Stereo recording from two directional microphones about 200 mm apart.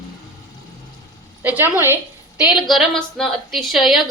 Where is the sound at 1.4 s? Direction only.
10° right (ahead or behind).